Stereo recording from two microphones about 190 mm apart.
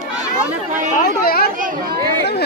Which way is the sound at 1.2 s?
55° left (ahead or behind).